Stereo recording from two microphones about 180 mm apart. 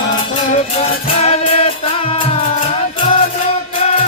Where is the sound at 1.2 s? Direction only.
35° left (ahead or behind).